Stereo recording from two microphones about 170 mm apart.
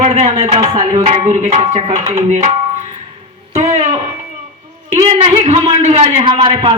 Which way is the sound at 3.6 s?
40° right (ahead or behind).